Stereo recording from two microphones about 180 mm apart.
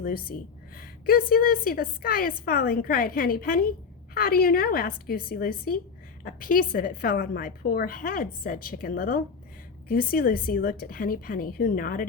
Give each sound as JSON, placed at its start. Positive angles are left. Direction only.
{"t": 0.0, "sound": "a woman's voice", "side_deg": 55}